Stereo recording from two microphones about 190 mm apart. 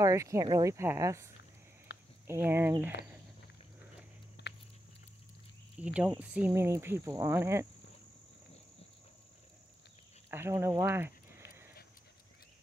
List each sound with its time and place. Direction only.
0.0 s speech: 15° right (ahead or behind)
1.9 s a sound: 65° left (ahead or behind)
2.2 s speech: 10° right (ahead or behind)
4.4 s a sound: 65° left (ahead or behind)
5.8 s speech: 5° right (ahead or behind)
10.3 s speech: 15° right (ahead or behind)